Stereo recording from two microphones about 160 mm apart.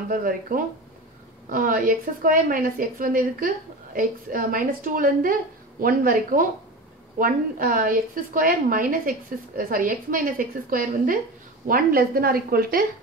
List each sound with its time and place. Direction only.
0.1 s a woman's voice: 60° right (ahead or behind)